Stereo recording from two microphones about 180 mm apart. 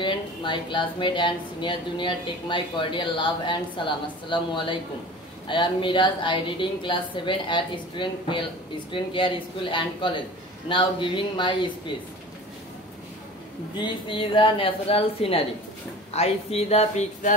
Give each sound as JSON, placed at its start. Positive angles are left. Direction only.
{"t": 0.0, "sound": "speech", "side_deg": 25}
{"t": 13.8, "sound": "speech", "side_deg": 25}